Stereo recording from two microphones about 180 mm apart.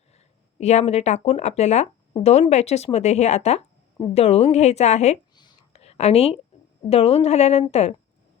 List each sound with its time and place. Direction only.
0.6 s speech: 35° left (ahead or behind)
5.3 s whispering: 25° left (ahead or behind)
6.9 s speech: 35° left (ahead or behind)